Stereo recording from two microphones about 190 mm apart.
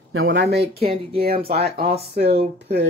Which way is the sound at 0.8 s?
30° right (ahead or behind).